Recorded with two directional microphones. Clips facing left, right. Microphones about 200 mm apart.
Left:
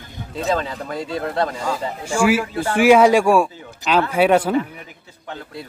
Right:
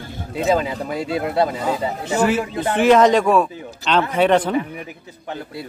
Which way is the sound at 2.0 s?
10° left (ahead or behind).